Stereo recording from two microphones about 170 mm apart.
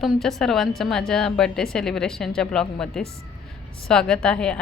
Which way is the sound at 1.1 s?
5° left (ahead or behind).